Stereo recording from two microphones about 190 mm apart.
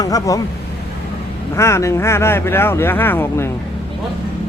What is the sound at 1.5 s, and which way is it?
Speech, 15° left (ahead or behind).